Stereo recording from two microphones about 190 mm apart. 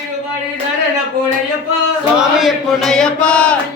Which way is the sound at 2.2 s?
Centre (ahead or behind).